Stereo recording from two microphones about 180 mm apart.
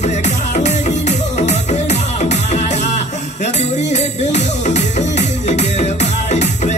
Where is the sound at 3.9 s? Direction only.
40° left (ahead or behind).